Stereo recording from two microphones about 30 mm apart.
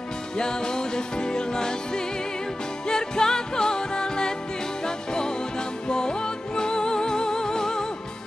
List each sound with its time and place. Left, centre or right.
0.4 s music: left